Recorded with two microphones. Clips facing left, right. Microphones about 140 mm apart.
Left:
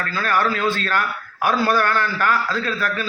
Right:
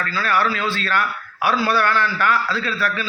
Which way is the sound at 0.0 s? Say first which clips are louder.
Even; 45° left (ahead or behind).